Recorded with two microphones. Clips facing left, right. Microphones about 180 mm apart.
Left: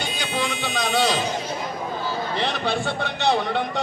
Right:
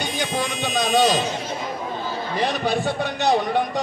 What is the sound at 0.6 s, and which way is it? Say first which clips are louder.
Music: right 5 dB; 20° right (ahead or behind).